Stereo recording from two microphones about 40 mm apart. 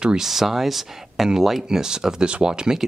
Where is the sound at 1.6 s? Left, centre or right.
Centre.